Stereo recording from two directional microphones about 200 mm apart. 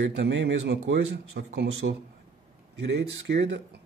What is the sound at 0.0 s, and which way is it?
Speech, 65° right (ahead or behind).